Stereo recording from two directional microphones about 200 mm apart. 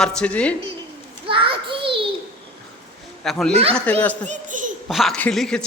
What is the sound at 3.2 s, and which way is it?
A man's voice, centre (ahead or behind).